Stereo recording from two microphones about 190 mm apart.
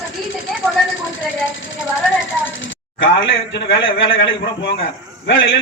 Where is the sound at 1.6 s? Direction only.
90° left; by 3.8 s 75° left (ahead or behind).